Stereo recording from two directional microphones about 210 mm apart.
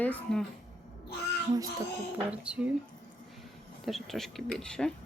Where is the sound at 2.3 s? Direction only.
5° right (ahead or behind).